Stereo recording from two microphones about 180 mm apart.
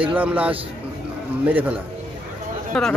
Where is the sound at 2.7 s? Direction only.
Centre (ahead or behind).